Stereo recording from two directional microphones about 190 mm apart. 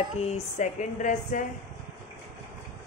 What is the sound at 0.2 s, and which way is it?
Speech, 35° left (ahead or behind).